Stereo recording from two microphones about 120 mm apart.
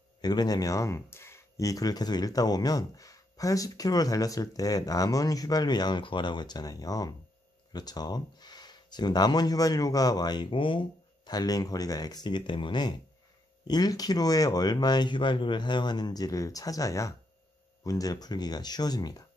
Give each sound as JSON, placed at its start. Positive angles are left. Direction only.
{"t": 0.2, "sound": "speech", "side_deg": 35}